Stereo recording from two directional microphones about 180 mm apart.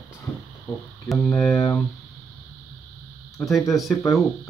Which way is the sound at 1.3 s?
15° left (ahead or behind).